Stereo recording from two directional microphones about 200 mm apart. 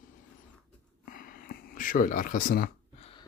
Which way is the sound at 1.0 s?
45° left (ahead or behind).